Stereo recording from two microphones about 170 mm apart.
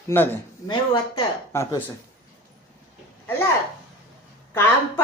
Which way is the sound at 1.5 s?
15° left (ahead or behind).